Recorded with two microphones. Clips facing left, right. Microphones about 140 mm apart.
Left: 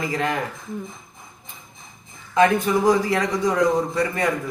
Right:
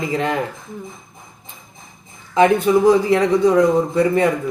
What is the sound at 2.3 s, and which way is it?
A man's voice, 25° right (ahead or behind).